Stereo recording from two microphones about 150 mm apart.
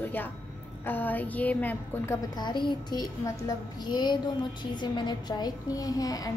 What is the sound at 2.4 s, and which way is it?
A child's voice, 30° left (ahead or behind).